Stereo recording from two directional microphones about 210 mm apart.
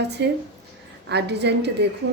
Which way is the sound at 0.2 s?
55° right (ahead or behind).